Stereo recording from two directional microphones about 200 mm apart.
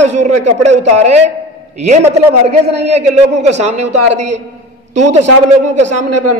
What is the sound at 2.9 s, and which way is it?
A man's voice, 35° right (ahead or behind).